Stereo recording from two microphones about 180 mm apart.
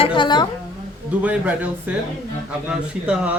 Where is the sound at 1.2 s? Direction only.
10° right (ahead or behind).